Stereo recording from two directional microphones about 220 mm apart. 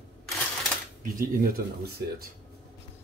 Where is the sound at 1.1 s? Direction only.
40° right (ahead or behind).